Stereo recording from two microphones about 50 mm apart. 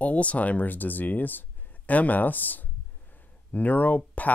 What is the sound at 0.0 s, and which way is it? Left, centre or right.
Speech, left.